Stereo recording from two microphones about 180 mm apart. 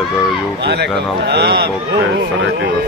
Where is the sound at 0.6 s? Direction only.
65° right (ahead or behind).